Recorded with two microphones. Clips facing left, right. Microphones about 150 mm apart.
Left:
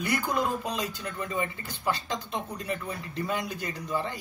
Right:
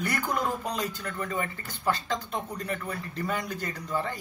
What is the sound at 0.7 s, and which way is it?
Speech, 20° left (ahead or behind).